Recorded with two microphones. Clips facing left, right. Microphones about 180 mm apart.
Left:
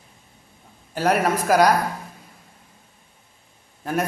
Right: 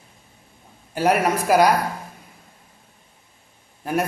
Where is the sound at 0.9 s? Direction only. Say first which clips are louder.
Right 1 dB; 10° right (ahead or behind).